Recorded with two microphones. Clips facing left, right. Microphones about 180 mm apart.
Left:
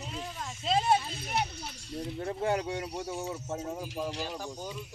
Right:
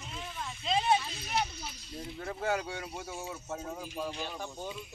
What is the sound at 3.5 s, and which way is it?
Speech, 20° left (ahead or behind).